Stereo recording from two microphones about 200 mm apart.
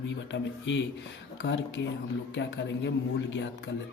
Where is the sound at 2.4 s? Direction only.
65° left (ahead or behind).